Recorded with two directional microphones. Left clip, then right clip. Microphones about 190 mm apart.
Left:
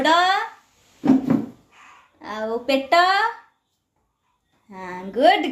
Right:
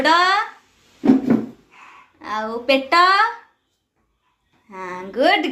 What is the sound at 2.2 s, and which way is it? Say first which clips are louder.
A woman's voice: right 2 dB; 30° left (ahead or behind).